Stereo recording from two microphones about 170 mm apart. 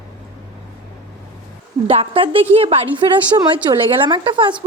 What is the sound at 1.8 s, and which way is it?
A woman's voice, 35° right (ahead or behind).